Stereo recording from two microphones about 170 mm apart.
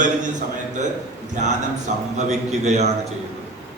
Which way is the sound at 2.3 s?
40° right (ahead or behind).